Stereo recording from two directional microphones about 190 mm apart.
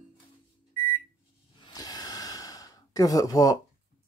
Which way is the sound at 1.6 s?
20° left (ahead or behind).